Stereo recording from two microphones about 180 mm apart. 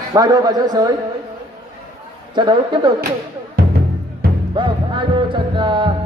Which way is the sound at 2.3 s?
25° right (ahead or behind).